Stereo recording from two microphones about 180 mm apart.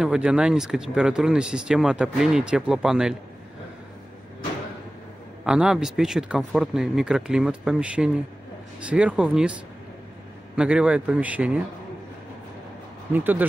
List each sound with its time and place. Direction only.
0.0 s speech: 5° right (ahead or behind)
5.4 s speech: 5° right (ahead or behind)
10.5 s a man's voice: 5° right (ahead or behind)
13.1 s a man's voice: 10° right (ahead or behind)